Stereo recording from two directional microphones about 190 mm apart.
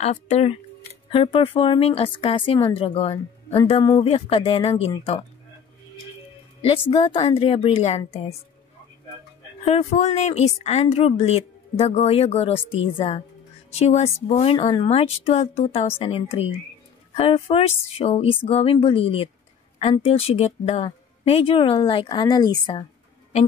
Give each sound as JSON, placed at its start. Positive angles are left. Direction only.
{"t": 0.0, "sound": "speech", "side_deg": 35}
{"t": 6.9, "sound": "speech", "side_deg": 30}
{"t": 9.7, "sound": "a woman's voice", "side_deg": 35}